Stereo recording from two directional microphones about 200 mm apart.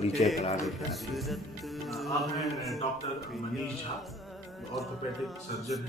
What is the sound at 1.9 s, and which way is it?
Mantra, centre (ahead or behind).